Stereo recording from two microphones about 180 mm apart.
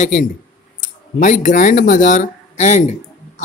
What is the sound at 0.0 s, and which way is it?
Speech, 45° left (ahead or behind).